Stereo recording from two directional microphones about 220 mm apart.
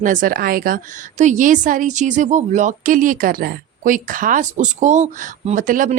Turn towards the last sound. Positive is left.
turn(degrees=-35)  # may be behind; listen again after turning